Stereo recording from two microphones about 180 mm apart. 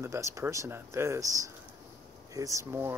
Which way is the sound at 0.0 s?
15° right (ahead or behind).